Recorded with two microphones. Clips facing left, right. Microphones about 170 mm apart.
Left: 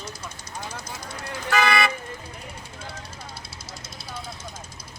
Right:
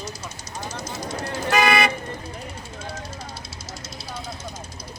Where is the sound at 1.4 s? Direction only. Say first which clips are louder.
Right 2 dB; 20° right (ahead or behind).